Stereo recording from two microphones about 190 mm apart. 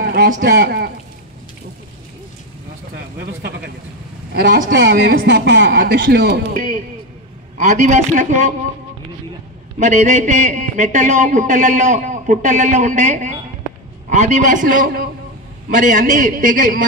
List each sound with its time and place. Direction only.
0.0 s a man's voice: 50° right (ahead or behind)
2.9 s a sound: 55° right (ahead or behind)
4.3 s speech: 55° right (ahead or behind)
7.5 s a man's voice: 40° right (ahead or behind)
9.8 s a man's voice: 40° right (ahead or behind)